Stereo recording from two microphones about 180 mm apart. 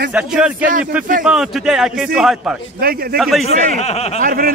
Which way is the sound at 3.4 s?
35° left (ahead or behind).